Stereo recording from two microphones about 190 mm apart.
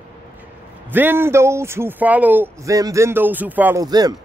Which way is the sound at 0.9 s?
10° right (ahead or behind).